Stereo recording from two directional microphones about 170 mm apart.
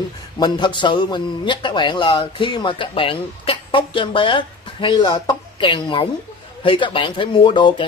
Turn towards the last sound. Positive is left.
turn(degrees=30)  # may be behind; listen again after turning